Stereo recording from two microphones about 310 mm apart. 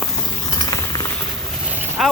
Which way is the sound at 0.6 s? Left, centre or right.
Centre.